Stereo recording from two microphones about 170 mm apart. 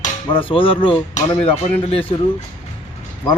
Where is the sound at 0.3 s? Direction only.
30° left (ahead or behind).